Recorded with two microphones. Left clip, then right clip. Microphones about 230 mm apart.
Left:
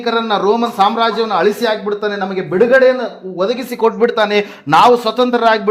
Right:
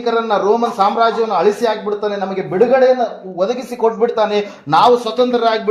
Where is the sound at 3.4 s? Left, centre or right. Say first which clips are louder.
Left 1 dB; left.